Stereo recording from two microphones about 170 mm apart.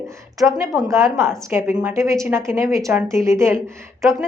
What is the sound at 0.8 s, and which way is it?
A woman's voice, 15° right (ahead or behind).